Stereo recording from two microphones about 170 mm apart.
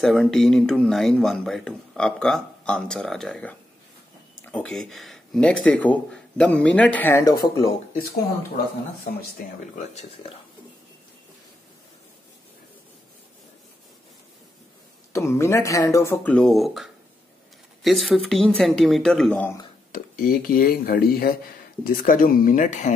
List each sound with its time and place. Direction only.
0.0 s speech: centre (ahead or behind); by 7.7 s 25° left (ahead or behind)
15.1 s speech: 15° left (ahead or behind)
19.9 s speech: 55° left (ahead or behind)